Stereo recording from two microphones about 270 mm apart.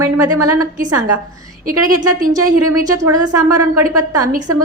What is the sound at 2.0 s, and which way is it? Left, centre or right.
Speech, right.